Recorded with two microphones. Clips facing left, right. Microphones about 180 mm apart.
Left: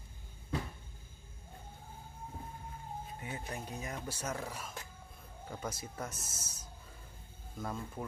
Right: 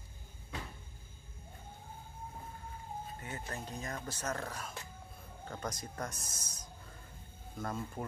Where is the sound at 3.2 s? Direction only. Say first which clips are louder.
Left 3 dB; 15° left (ahead or behind).